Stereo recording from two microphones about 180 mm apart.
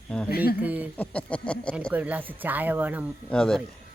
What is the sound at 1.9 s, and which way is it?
Speech, 10° right (ahead or behind).